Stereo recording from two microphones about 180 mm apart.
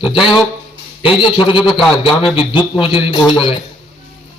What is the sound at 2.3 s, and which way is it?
A man's voice, 30° left (ahead or behind).